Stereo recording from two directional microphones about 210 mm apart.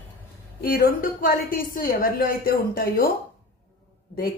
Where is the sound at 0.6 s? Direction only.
45° left (ahead or behind).